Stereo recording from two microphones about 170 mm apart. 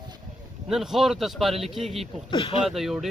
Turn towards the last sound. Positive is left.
turn(degrees=0)  # may be behind; listen again after turning